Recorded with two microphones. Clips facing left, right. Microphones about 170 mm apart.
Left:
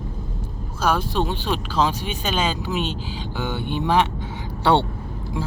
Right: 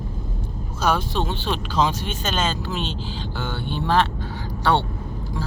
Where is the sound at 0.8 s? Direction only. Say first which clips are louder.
Left 1 dB; 5° left (ahead or behind).